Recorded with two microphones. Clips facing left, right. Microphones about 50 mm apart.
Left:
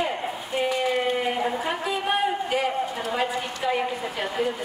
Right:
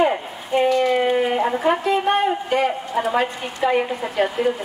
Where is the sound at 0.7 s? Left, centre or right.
Centre.